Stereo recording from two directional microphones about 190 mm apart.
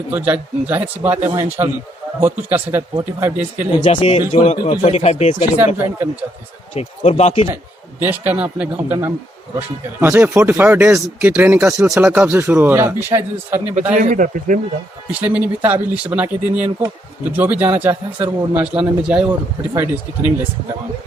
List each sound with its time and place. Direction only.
0.1 s speech: 10° right (ahead or behind)
3.8 s speech: 35° left (ahead or behind)
4.8 s speech: 35° left (ahead or behind)
5.5 s speech: 10° right (ahead or behind)
6.7 s speech: 35° left (ahead or behind)
7.5 s speech: 10° right (ahead or behind)
13.9 s a man's voice: 40° right (ahead or behind)
15.2 s speech: 5° right (ahead or behind)